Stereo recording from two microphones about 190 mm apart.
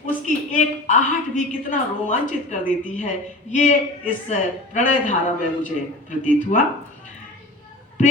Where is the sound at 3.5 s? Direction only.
40° left (ahead or behind).